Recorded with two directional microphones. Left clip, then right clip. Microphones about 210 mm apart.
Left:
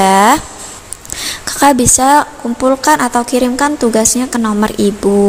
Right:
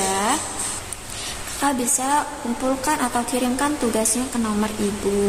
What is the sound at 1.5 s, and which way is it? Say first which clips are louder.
A woman's voice: left 13 dB; 45° left (ahead or behind).